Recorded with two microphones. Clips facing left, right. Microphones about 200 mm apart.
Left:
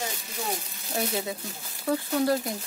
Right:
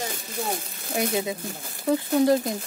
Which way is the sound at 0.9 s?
15° right (ahead or behind).